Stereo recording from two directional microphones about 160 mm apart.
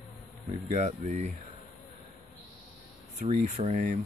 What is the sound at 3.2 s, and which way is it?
Speech, 45° right (ahead or behind).